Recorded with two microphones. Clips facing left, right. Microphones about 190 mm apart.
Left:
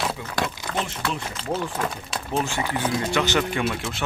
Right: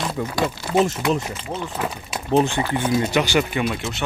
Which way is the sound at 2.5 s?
15° right (ahead or behind).